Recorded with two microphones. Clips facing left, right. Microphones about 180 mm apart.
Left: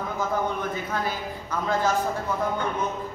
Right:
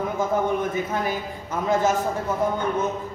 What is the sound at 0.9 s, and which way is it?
A man's voice, 20° right (ahead or behind).